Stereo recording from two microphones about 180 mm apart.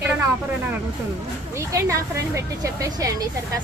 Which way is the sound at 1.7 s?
15° right (ahead or behind).